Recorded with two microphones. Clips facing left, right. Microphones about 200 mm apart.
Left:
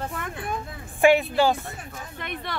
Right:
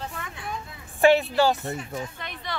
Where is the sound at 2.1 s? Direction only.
55° left (ahead or behind).